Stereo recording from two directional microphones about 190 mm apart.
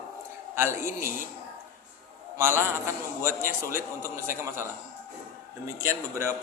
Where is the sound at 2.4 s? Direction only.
10° right (ahead or behind).